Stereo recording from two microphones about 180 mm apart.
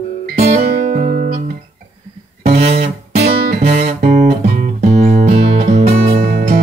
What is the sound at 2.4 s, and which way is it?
Music, 35° right (ahead or behind).